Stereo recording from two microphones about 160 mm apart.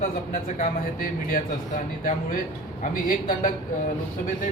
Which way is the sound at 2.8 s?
55° left (ahead or behind).